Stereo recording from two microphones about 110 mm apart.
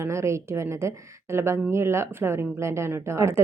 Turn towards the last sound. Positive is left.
turn(degrees=-25)  # may be behind; listen again after turning